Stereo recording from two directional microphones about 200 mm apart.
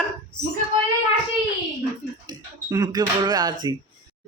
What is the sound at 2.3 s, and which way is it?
Speech, 20° right (ahead or behind).